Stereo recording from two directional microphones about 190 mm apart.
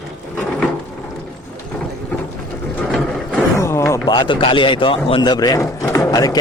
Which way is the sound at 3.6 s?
15° left (ahead or behind).